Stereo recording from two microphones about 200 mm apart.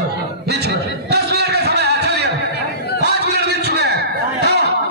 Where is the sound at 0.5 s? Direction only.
55° right (ahead or behind).